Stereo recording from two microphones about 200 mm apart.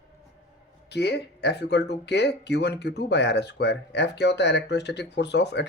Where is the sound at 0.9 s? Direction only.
55° left (ahead or behind).